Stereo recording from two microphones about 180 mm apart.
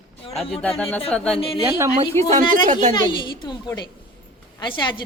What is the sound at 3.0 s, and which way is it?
A woman's voice, 25° left (ahead or behind).